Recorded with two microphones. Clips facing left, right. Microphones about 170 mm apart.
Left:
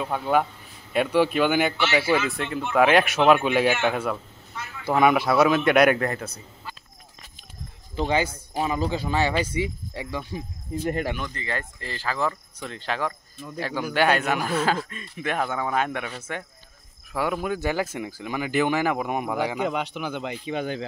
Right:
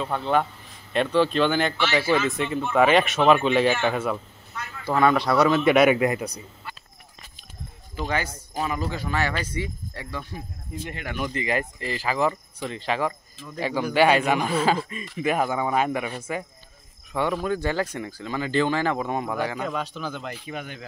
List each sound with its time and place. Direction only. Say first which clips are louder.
0.0 s speech: even; 10° left (ahead or behind)
6.0 s speech: right 4 dB; 15° right (ahead or behind)
7.9 s speech: left 4 dB; 25° left (ahead or behind)
11.2 s speech: right 6 dB; 15° right (ahead or behind)
17.1 s speech: right 1 dB; 5° left (ahead or behind)